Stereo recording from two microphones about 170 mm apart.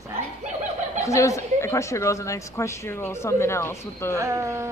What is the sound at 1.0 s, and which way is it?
A woman's voice, 20° left (ahead or behind).